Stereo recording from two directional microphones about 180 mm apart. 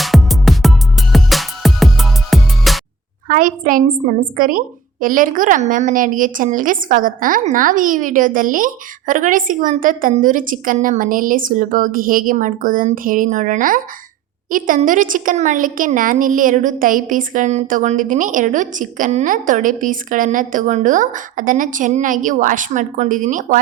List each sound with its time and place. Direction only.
0.0 s music: centre (ahead or behind)
3.2 s a woman's voice: 50° right (ahead or behind)